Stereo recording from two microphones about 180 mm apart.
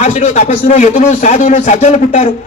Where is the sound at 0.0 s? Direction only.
40° left (ahead or behind).